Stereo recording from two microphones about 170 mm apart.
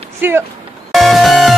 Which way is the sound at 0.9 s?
Centre (ahead or behind).